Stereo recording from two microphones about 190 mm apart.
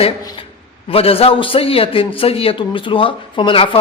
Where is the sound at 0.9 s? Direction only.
30° left (ahead or behind).